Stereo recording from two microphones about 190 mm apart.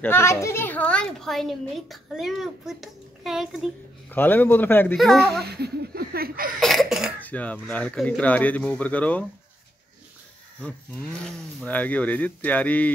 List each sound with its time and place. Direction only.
0.0 s a woman's voice: 15° left (ahead or behind)
4.1 s a woman's voice: 10° left (ahead or behind)
5.4 s speech: 60° right (ahead or behind)
6.6 s cough: centre (ahead or behind)
7.2 s speech: 10° left (ahead or behind)
11.2 s speech: 5° left (ahead or behind)